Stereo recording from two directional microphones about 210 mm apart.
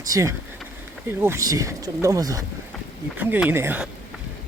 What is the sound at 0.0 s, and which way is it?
Speech, 15° right (ahead or behind).